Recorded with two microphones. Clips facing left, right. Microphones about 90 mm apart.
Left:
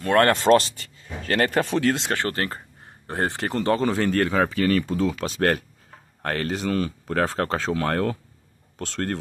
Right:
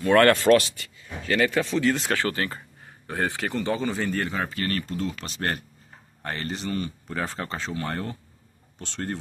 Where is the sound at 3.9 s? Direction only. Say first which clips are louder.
Left 6 dB; 80° left.